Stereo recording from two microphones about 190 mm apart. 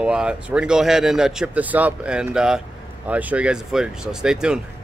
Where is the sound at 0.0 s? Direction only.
5° right (ahead or behind).